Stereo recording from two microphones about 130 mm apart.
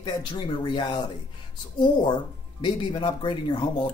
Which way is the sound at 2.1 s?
35° left (ahead or behind).